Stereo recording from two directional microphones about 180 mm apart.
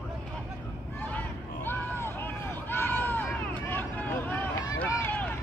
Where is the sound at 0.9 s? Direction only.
10° left (ahead or behind).